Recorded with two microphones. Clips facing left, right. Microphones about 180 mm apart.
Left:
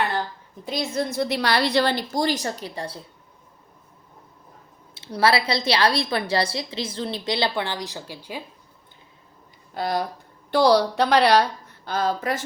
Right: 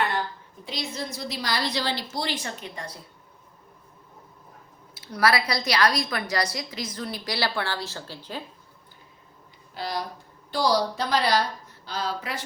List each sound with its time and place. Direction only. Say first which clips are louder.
0.6 s a woman's voice: left 7 dB; 50° left (ahead or behind); by 3.0 s 30° left (ahead or behind)
4.9 s a woman's voice: left 3 dB; 30° left (ahead or behind); by 8.4 s 10° left (ahead or behind)
9.7 s a woman's voice: left 6 dB; 50° left (ahead or behind)
10.5 s a woman's voice: left 6 dB; 65° left (ahead or behind)
11.9 s a woman's voice: left 7 dB; 50° left (ahead or behind)